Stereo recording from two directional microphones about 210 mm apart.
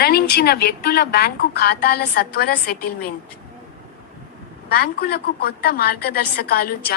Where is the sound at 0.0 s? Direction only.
45° left (ahead or behind).